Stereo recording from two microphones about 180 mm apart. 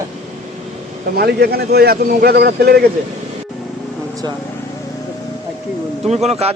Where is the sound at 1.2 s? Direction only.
60° right (ahead or behind).